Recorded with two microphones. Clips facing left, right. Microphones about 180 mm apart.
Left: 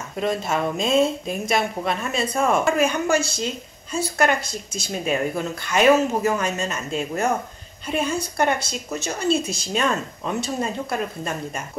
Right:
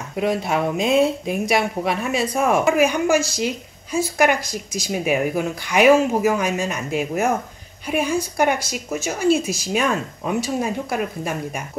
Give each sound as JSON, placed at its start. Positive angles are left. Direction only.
{"t": 0.1, "sound": "speech", "side_deg": -10}
{"t": 0.8, "sound": "speech", "side_deg": -60}
{"t": 1.5, "sound": "speech", "side_deg": -15}